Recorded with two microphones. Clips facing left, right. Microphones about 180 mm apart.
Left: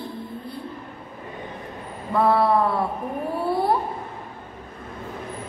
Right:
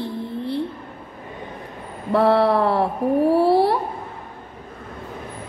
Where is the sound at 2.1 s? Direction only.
75° right (ahead or behind).